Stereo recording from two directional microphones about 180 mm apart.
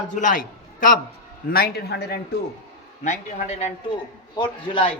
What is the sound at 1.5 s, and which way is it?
Speech, 60° left (ahead or behind).